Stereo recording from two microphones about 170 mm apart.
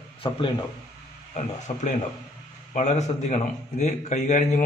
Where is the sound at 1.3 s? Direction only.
45° left (ahead or behind).